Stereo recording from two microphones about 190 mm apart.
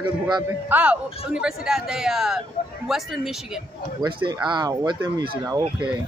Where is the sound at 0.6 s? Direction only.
10° right (ahead or behind).